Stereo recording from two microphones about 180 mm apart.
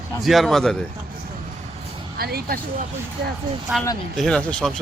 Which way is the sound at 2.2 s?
60° right (ahead or behind).